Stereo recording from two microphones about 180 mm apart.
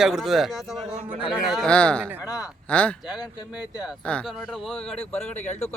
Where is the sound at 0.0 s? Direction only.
Centre (ahead or behind).